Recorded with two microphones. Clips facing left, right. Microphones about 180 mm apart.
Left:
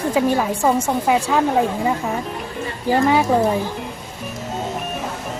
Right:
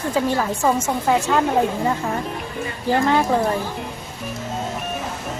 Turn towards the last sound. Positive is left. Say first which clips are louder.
# left 2 dB
turn(degrees=10)  # may be behind; listen again after turning